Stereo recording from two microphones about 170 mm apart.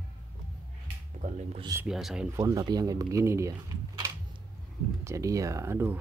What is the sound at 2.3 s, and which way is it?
Speech, 20° right (ahead or behind).